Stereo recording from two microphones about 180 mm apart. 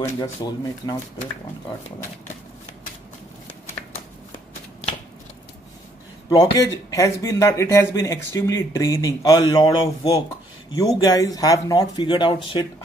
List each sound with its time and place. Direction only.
0.0 s speech: 20° left (ahead or behind)
6.2 s a man's voice: 20° left (ahead or behind)